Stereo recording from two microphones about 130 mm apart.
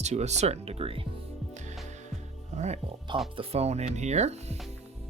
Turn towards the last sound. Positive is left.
turn(degrees=-60)  # may be behind; listen again after turning